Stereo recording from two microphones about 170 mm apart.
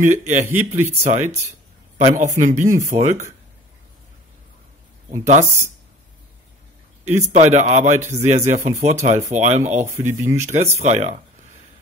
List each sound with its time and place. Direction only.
0.0 s speech: 45° right (ahead or behind)
5.2 s speech: 45° right (ahead or behind)
7.1 s speech: 45° right (ahead or behind)
10.0 s speech: 15° right (ahead or behind)
10.8 s speech: 40° right (ahead or behind)